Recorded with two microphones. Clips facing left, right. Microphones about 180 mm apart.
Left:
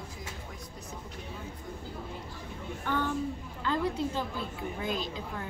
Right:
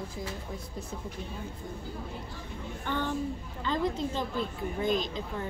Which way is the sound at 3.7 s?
10° left (ahead or behind).